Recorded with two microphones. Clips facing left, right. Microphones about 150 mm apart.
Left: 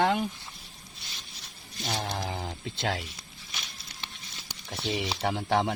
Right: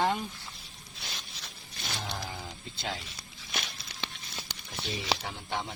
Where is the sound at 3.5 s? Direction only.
90° right.